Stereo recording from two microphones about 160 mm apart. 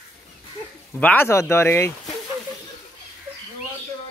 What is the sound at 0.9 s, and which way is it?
Speech, 10° left (ahead or behind).